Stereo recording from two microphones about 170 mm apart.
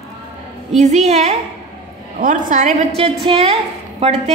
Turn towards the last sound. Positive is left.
turn(degrees=-35)  # may be behind; listen again after turning